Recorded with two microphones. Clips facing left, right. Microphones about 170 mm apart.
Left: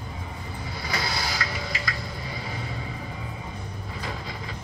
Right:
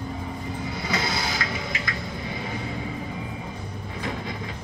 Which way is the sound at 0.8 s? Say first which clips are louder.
Right 2 dB; 25° right (ahead or behind).